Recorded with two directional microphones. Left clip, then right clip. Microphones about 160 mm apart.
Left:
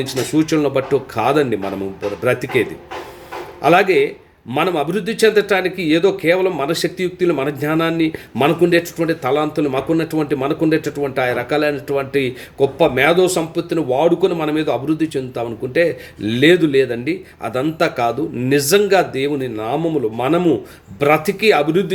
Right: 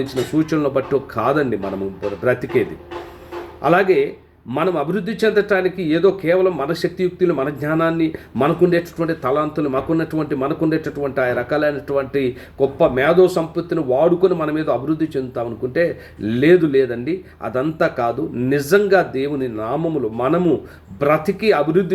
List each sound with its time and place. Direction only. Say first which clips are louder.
0.0 s a man's voice: left 2 dB; 45° left (ahead or behind)